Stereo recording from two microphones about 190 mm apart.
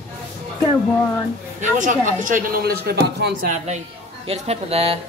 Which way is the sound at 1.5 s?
40° right (ahead or behind).